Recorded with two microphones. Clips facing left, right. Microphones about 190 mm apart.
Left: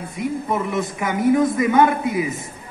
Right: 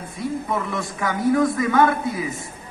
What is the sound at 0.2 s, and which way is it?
A man's voice, 20° left (ahead or behind).